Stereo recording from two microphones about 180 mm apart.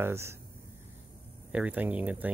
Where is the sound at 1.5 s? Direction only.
5° right (ahead or behind).